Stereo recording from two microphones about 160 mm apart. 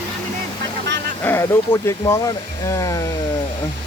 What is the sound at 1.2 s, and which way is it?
Speech, 15° left (ahead or behind).